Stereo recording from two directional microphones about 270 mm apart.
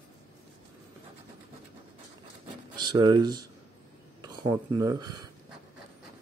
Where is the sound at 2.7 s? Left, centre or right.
Centre.